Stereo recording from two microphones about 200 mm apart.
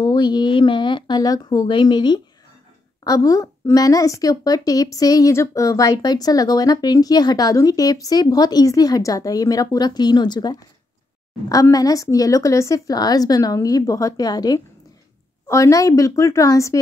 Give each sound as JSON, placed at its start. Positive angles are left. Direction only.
{"t": 0.0, "sound": "a woman's voice", "side_deg": 20}